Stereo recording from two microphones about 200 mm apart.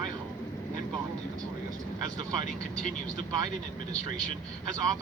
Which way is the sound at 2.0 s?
20° right (ahead or behind).